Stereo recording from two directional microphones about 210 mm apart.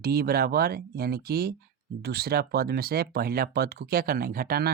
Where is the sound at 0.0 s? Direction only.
45° right (ahead or behind).